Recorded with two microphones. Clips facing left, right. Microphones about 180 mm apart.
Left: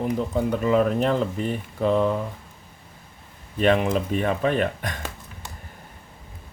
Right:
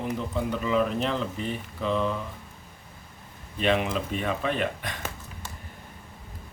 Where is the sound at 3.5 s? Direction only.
45° left (ahead or behind).